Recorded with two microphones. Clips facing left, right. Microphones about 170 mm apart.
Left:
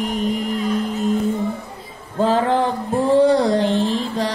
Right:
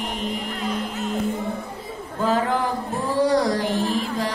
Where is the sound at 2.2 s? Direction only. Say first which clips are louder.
Left 4 dB; 30° left (ahead or behind).